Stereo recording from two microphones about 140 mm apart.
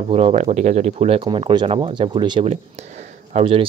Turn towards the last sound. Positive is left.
turn(degrees=-55)  # may be behind; listen again after turning